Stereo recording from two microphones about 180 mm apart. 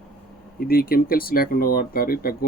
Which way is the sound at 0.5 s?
55° left (ahead or behind).